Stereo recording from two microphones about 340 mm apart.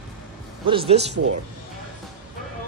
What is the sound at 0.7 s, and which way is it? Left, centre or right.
Speech, centre.